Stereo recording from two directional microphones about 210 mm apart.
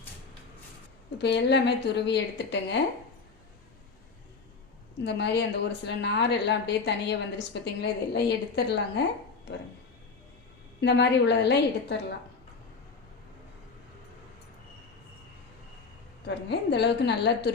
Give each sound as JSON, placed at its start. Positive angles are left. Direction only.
{"t": 1.2, "sound": "a woman's voice", "side_deg": 55}
{"t": 5.0, "sound": "a woman's voice", "side_deg": 55}
{"t": 10.8, "sound": "a woman's voice", "side_deg": 55}
{"t": 16.2, "sound": "a woman's voice", "side_deg": 55}